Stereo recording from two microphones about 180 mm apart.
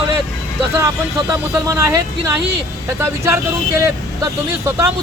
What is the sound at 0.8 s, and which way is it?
Speech, 15° right (ahead or behind).